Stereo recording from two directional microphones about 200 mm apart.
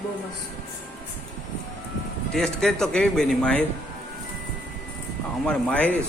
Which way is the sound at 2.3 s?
5° left (ahead or behind).